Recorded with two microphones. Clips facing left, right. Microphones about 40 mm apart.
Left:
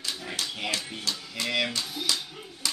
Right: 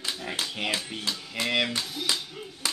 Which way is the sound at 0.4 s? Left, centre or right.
Right.